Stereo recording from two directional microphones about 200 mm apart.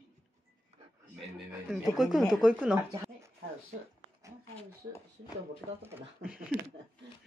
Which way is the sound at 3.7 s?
40° right (ahead or behind).